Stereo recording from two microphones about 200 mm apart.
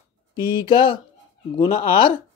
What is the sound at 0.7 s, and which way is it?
Speech, 25° left (ahead or behind).